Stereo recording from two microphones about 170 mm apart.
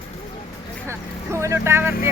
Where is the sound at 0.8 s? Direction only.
15° right (ahead or behind).